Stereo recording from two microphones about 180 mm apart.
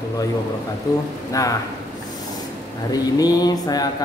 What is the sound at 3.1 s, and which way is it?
Speech, 20° left (ahead or behind).